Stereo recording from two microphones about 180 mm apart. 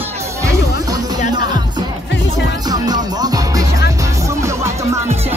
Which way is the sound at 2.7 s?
20° right (ahead or behind).